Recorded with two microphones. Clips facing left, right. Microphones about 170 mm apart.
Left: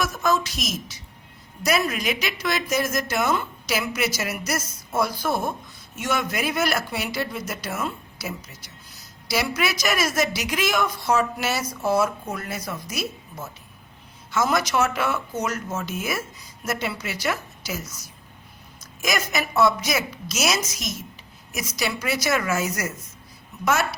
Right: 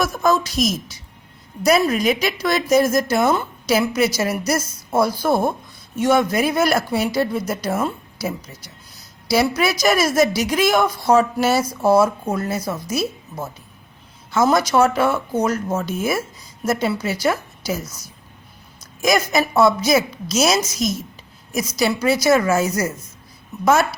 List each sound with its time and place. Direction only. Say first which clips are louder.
0.0 s speech: right 5 dB; 35° right (ahead or behind)
14.3 s a woman's voice: right 6 dB; 35° right (ahead or behind)
19.0 s speech: right 8 dB; 35° right (ahead or behind)